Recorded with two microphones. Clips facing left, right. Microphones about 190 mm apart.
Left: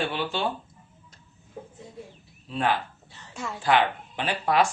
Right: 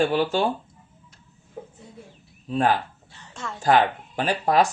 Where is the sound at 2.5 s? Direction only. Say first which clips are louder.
Right 4 dB; 45° right (ahead or behind).